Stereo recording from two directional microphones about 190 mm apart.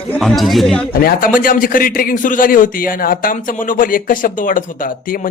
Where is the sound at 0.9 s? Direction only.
50° left (ahead or behind).